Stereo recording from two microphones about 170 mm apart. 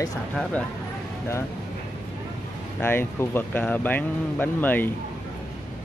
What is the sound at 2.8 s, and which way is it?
Speech, 15° left (ahead or behind).